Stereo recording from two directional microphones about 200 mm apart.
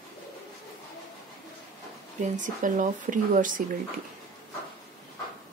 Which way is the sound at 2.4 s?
40° right (ahead or behind).